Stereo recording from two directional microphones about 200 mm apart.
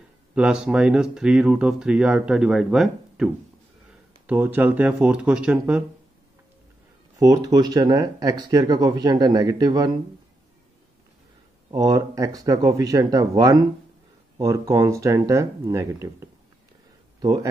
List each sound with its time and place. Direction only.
0.3 s speech: 5° right (ahead or behind)
4.3 s speech: 10° right (ahead or behind)
7.2 s speech: 15° right (ahead or behind)
11.7 s speech: 20° right (ahead or behind)